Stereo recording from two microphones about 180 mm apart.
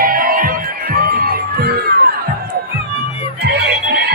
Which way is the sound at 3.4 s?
65° right (ahead or behind).